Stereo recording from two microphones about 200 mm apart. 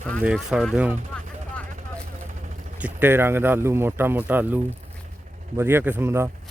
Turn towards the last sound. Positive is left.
turn(degrees=-10)  # may be behind; listen again after turning